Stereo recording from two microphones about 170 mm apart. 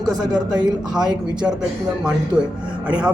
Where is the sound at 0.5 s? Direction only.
25° right (ahead or behind).